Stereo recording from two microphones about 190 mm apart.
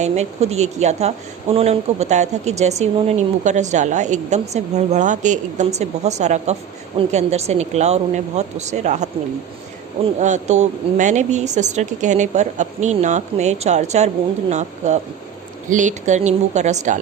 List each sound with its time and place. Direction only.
0.0 s speech: 35° right (ahead or behind)
10.2 s speech: 40° right (ahead or behind)
15.7 s speech: 40° right (ahead or behind)